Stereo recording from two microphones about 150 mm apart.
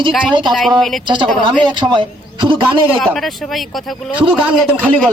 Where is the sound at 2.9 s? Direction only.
5° left (ahead or behind).